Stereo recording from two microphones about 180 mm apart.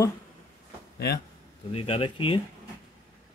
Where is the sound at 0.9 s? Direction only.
60° left (ahead or behind).